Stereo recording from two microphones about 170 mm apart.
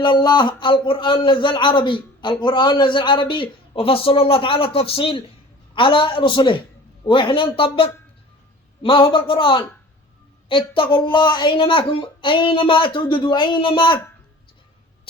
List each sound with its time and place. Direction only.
0.0 s a man's voice: 25° left (ahead or behind)